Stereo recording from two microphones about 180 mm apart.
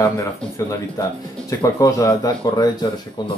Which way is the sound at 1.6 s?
20° left (ahead or behind).